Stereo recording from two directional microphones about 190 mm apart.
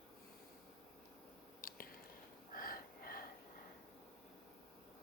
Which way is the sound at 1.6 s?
50° left (ahead or behind).